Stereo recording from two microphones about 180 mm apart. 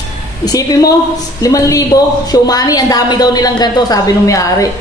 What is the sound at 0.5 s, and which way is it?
A woman's voice, 20° left (ahead or behind).